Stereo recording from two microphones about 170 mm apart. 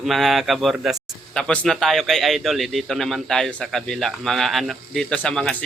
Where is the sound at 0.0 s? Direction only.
Centre (ahead or behind).